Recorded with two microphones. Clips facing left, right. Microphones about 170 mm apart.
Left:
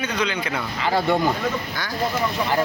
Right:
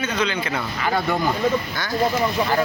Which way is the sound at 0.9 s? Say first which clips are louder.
Left 3 dB; 25° left (ahead or behind).